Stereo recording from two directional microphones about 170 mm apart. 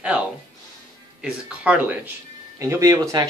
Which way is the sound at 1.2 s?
5° right (ahead or behind).